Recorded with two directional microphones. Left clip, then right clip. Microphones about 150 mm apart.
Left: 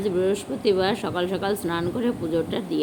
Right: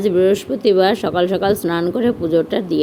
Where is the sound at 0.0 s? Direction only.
50° right (ahead or behind).